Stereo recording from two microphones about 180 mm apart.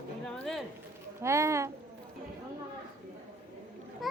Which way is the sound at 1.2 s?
15° right (ahead or behind).